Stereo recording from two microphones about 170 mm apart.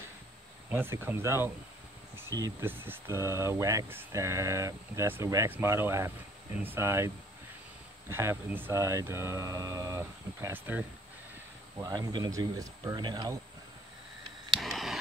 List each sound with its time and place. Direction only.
0.7 s speech: 15° right (ahead or behind)
8.1 s speech: 15° right (ahead or behind)
11.8 s speech: 25° right (ahead or behind)
14.6 s a sound: centre (ahead or behind)